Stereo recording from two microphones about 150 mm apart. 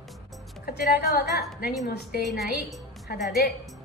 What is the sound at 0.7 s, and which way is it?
A woman's voice, 90° left.